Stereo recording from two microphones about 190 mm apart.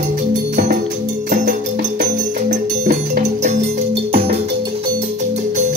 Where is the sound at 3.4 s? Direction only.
40° right (ahead or behind).